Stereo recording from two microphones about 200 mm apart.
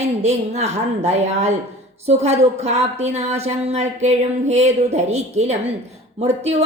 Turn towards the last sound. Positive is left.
turn(degrees=-30)  # may be behind; listen again after turning